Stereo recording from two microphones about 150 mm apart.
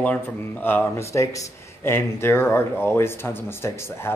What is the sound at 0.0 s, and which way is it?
Speech, 10° left (ahead or behind).